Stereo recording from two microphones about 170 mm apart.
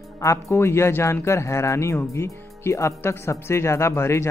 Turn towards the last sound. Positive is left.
turn(degrees=15)  # may be behind; listen again after turning